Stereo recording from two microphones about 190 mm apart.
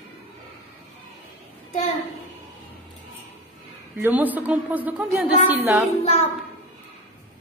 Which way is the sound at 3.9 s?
10° right (ahead or behind).